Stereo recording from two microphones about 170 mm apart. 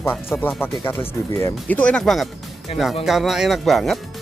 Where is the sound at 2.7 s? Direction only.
35° left (ahead or behind).